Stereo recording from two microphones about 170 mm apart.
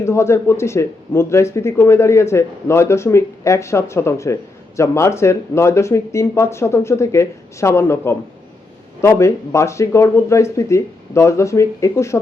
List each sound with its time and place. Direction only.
0.0 s speech: 15° left (ahead or behind)